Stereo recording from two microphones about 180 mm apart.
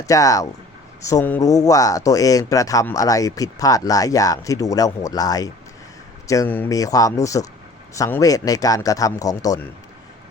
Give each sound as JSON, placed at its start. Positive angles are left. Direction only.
{"t": 0.0, "sound": "speech", "side_deg": 20}